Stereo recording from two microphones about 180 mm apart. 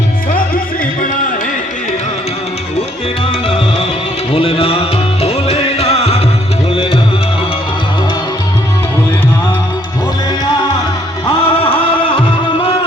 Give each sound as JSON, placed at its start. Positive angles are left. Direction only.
{"t": 4.3, "sound": "music", "side_deg": 30}
{"t": 11.3, "sound": "music", "side_deg": 30}